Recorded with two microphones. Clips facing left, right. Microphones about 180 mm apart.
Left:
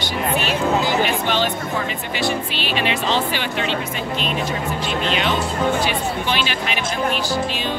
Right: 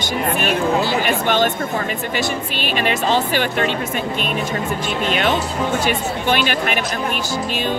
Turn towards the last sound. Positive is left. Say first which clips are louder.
# right 4 dB
turn(degrees=-50)  # may be behind; listen again after turning